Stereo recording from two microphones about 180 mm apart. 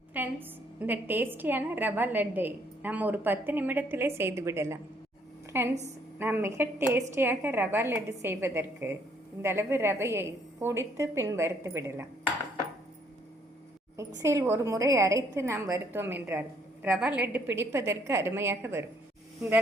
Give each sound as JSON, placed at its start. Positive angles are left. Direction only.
{"t": 0.1, "sound": "a woman's voice", "side_deg": -10}
{"t": 14.2, "sound": "a woman's voice", "side_deg": -15}